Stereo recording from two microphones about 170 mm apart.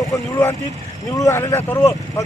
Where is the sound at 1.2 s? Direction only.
20° left (ahead or behind).